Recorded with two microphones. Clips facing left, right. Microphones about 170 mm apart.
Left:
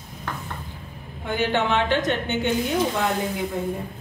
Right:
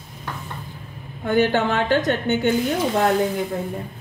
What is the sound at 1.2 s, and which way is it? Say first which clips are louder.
A woman's voice: right 4 dB; 45° right (ahead or behind).